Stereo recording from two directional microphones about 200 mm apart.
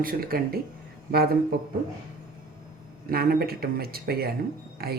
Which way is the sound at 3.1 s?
50° right (ahead or behind).